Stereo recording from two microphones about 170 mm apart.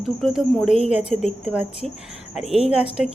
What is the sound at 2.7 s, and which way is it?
Speech, 5° right (ahead or behind).